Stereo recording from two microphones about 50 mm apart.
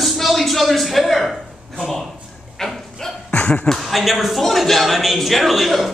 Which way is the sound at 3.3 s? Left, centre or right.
Left.